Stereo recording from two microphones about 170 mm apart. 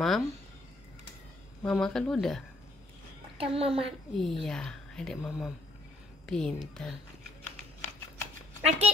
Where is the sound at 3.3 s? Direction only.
35° right (ahead or behind).